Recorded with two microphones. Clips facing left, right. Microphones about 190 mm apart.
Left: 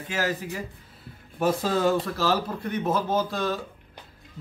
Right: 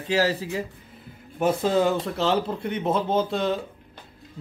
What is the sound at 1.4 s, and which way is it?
A man's voice, 20° right (ahead or behind).